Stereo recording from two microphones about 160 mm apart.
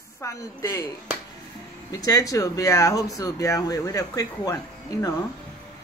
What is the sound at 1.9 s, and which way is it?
Speech, 20° left (ahead or behind).